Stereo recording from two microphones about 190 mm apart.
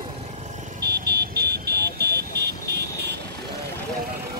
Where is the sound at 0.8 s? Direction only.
60° right (ahead or behind).